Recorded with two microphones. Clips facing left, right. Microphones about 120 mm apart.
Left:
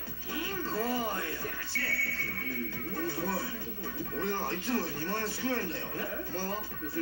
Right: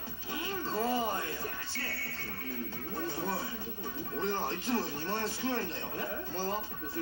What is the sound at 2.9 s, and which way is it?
A man's voice, 15° right (ahead or behind).